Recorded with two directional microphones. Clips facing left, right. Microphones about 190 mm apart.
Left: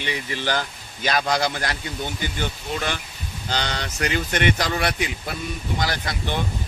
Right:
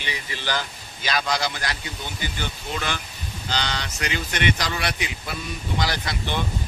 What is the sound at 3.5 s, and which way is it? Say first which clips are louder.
Speech: left 1 dB; 50° left (ahead or behind).